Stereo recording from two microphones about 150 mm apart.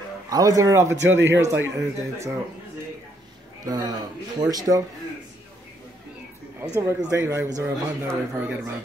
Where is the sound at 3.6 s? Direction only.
25° right (ahead or behind).